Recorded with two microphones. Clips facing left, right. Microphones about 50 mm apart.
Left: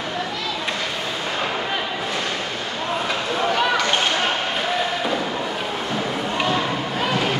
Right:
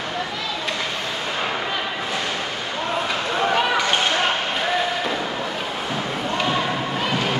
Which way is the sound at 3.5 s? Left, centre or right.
Centre.